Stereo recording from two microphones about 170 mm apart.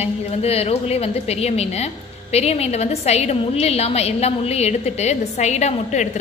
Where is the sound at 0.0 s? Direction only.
35° left (ahead or behind).